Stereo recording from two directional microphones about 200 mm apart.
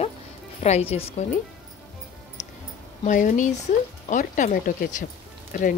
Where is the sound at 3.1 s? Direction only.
40° left (ahead or behind).